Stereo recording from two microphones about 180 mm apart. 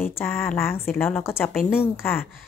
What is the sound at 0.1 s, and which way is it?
Speech, 10° left (ahead or behind).